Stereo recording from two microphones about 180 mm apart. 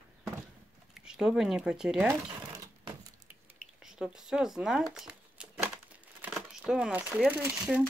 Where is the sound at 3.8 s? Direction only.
5° right (ahead or behind).